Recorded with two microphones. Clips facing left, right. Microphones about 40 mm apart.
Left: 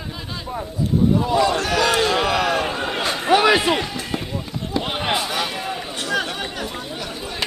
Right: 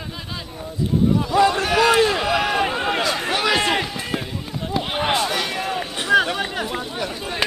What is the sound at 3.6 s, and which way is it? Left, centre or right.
Run, centre.